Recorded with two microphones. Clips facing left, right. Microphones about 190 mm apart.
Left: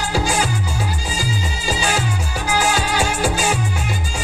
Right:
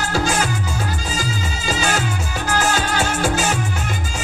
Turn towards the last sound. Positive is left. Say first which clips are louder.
# even
turn(degrees=10)  # may be behind; listen again after turning